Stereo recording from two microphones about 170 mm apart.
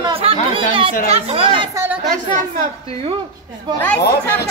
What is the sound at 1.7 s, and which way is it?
Speech, 15° right (ahead or behind).